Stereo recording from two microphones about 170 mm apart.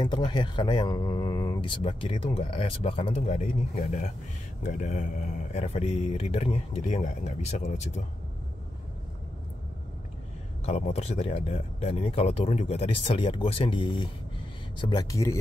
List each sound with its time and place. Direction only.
0.0 s speech: 25° left (ahead or behind)
3.2 s speech: 50° left (ahead or behind)
4.6 s speech: 45° left (ahead or behind)
10.6 s speech: 40° left (ahead or behind); by 15.3 s 20° left (ahead or behind)